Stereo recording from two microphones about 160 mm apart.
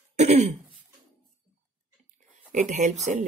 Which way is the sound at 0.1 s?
45° right (ahead or behind).